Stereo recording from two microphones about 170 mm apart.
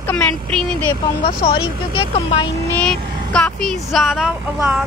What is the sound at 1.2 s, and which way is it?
Speech, 30° left (ahead or behind).